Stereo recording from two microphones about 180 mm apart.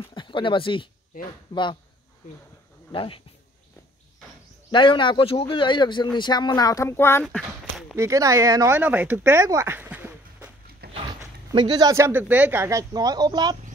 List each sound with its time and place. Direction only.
0.1 s a man's voice: 25° left (ahead or behind)
2.9 s speech: 30° left (ahead or behind)
4.6 s a man's voice: 25° left (ahead or behind)
7.2 s speech: centre (ahead or behind)
7.9 s speech: 15° right (ahead or behind)
10.8 s dog: 60° right (ahead or behind)
11.5 s speech: 25° right (ahead or behind)